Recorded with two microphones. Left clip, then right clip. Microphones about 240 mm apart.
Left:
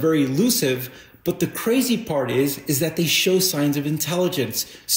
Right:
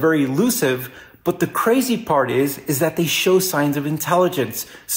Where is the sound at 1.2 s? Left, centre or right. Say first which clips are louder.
Right 5 dB; centre.